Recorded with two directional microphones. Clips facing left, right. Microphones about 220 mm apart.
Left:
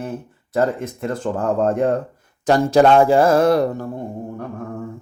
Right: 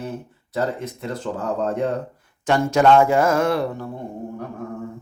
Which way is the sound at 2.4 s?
35° left (ahead or behind).